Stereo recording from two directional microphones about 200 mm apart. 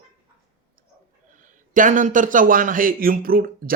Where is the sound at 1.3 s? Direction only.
40° right (ahead or behind).